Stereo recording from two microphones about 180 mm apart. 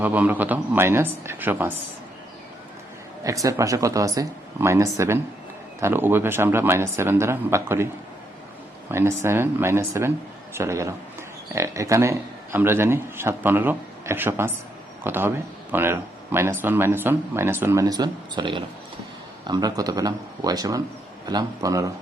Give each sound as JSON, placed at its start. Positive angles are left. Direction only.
{"t": 0.0, "sound": "a man's voice", "side_deg": -10}
{"t": 3.4, "sound": "a man's voice", "side_deg": -20}
{"t": 8.9, "sound": "a man's voice", "side_deg": -15}